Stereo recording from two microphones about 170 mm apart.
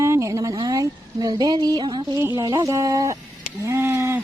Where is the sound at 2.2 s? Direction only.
20° right (ahead or behind).